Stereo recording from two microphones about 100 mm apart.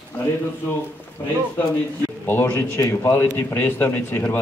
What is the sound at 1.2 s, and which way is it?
A man's voice, 20° left (ahead or behind).